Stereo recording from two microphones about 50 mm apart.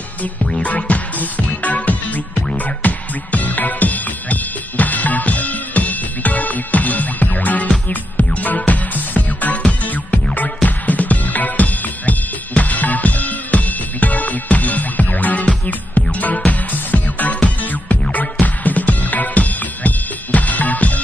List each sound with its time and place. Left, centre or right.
0.6 s music: left